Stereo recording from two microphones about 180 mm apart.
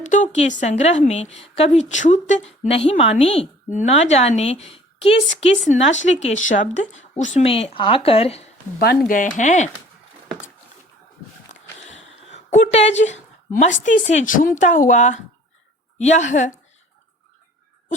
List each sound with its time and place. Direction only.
0.1 s a woman's voice: 45° left (ahead or behind)
9.0 s speech: 45° left (ahead or behind)
12.3 s a woman's voice: 40° left (ahead or behind)